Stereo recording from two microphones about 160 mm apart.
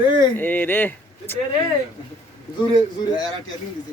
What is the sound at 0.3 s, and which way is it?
Speech, 10° left (ahead or behind).